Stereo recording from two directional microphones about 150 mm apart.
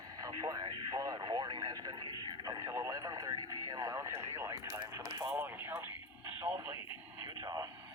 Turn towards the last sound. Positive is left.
turn(degrees=-25)  # may be behind; listen again after turning